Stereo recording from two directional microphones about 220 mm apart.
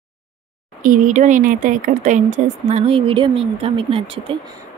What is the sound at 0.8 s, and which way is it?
Speech, 35° right (ahead or behind).